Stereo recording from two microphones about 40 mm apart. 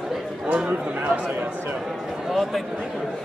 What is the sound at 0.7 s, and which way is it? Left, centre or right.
Speech, right.